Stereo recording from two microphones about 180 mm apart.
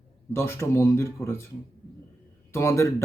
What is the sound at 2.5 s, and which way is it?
Speech, 15° left (ahead or behind).